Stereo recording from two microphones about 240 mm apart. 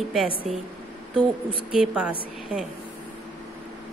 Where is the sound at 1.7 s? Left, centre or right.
Centre.